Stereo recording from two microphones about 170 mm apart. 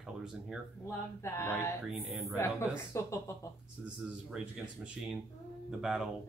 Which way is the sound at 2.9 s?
15° left (ahead or behind).